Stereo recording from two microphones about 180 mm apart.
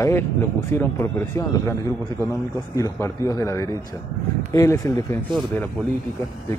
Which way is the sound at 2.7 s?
15° left (ahead or behind).